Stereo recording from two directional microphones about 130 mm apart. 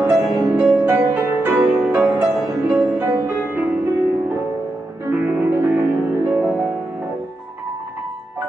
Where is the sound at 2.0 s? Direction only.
5° right (ahead or behind).